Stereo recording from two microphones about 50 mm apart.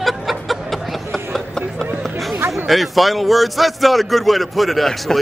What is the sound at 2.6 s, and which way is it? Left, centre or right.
A man's voice, centre.